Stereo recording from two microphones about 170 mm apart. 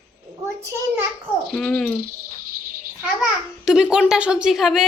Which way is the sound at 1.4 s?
5° left (ahead or behind).